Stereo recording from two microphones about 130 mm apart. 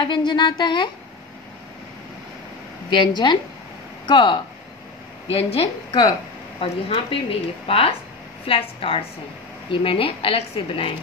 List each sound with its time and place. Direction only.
0.0 s speech: 40° left (ahead or behind)
2.9 s speech: 35° left (ahead or behind)
5.3 s a woman's voice: 50° left (ahead or behind)